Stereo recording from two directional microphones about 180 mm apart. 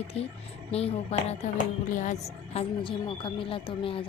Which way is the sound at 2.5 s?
30° left (ahead or behind).